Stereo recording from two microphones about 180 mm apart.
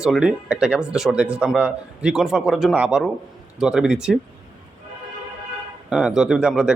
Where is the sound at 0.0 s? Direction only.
5° right (ahead or behind).